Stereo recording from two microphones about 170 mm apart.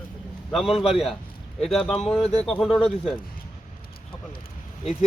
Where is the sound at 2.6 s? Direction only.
5° left (ahead or behind).